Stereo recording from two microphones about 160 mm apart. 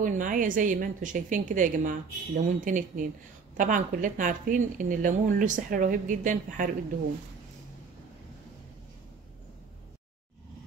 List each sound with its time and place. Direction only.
0.0 s a woman's voice: 55° right (ahead or behind)